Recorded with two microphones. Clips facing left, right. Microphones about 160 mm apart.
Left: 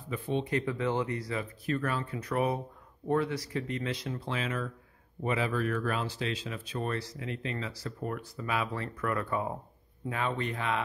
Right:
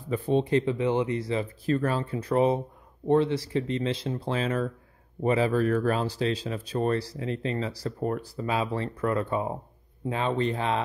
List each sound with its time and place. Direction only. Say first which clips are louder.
0.1 s speech: right 7 dB; 35° right (ahead or behind)